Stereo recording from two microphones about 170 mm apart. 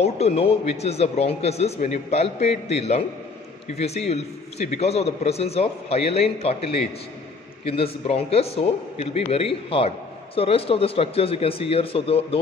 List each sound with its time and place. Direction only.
0.0 s a man's voice: 35° left (ahead or behind)
7.6 s a man's voice: 35° left (ahead or behind)